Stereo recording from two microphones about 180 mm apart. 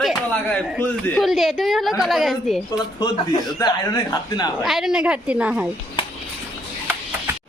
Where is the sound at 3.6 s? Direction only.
20° left (ahead or behind).